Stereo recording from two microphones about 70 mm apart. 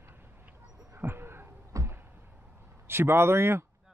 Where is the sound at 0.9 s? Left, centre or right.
Right.